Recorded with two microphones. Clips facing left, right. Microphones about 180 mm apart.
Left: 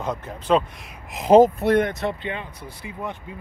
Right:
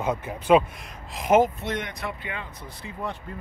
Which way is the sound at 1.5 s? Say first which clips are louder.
Left 12 dB; 60° left (ahead or behind).